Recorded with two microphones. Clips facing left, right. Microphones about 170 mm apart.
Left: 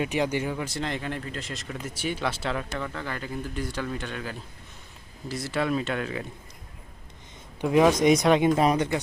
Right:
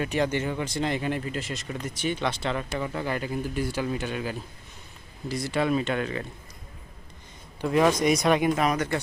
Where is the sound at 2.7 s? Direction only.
15° right (ahead or behind).